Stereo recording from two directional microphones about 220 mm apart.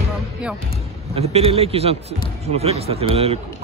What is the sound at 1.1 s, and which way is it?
Speech, 25° right (ahead or behind).